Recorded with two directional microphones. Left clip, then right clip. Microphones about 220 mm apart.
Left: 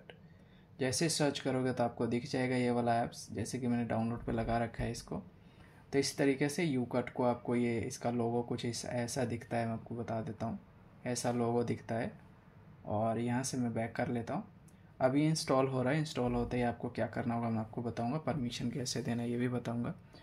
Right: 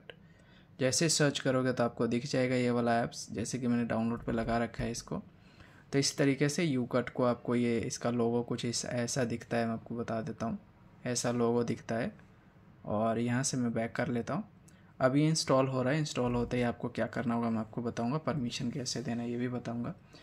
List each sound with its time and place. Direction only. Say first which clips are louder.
0.7 s speech: right 4 dB; 20° right (ahead or behind); by 20.0 s centre (ahead or behind)